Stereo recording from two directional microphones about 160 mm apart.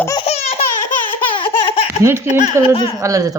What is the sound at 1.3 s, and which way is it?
Baby laughter, 30° left (ahead or behind).